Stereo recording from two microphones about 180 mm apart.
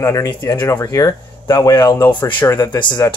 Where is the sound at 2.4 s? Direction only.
10° left (ahead or behind).